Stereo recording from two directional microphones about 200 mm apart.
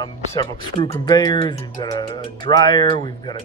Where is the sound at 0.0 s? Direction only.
20° left (ahead or behind).